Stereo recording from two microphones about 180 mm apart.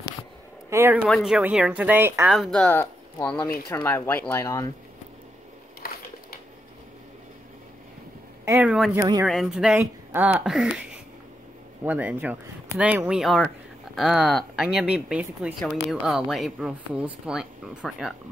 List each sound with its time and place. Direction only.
0.7 s speech: 15° right (ahead or behind)
1.0 s speech: centre (ahead or behind)
2.3 s speech: centre (ahead or behind)
5.8 s a sound: 55° left (ahead or behind)
8.5 s a woman's voice: 10° right (ahead or behind)
11.8 s a woman's voice: 10° right (ahead or behind)